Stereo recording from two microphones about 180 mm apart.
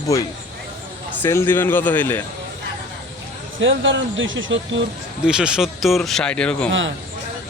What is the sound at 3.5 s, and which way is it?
Speech, 90° right.